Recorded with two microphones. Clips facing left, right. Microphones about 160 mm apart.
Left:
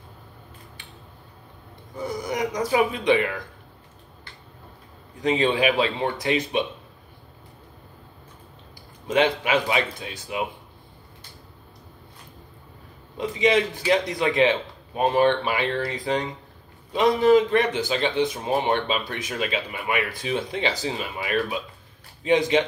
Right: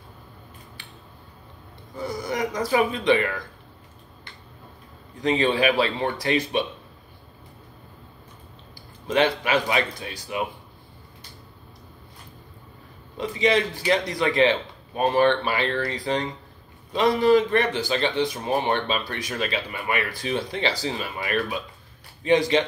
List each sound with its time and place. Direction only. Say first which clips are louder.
2.0 s a man's voice: even; 20° left (ahead or behind)
5.2 s speech: even; 20° left (ahead or behind)
9.0 s a man's voice: even; 20° left (ahead or behind)
13.2 s a man's voice: left 1 dB; 20° left (ahead or behind)